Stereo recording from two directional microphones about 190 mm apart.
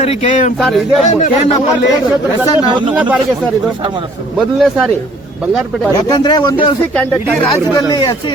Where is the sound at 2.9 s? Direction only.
10° right (ahead or behind).